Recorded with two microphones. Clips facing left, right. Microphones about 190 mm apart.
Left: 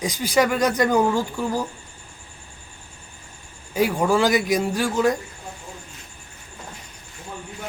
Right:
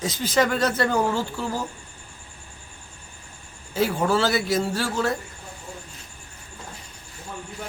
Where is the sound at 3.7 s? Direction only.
15° left (ahead or behind).